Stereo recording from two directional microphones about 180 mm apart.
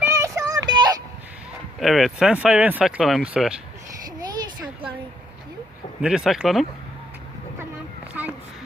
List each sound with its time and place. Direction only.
0.0 s child singing: 15° right (ahead or behind)
1.8 s speech: centre (ahead or behind)
6.0 s speech: 5° right (ahead or behind)